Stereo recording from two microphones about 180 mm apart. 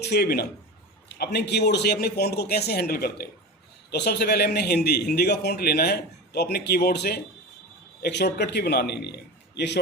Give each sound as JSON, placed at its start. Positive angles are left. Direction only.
{"t": 0.0, "sound": "a man's voice", "side_deg": 65}